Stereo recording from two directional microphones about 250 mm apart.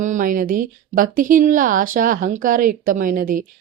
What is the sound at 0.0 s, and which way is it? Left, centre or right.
A woman's voice, right.